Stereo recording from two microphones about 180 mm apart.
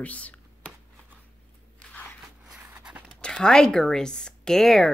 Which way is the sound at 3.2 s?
5° left (ahead or behind).